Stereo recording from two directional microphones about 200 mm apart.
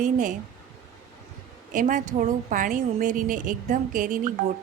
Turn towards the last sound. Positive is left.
turn(degrees=-40)  # may be behind; listen again after turning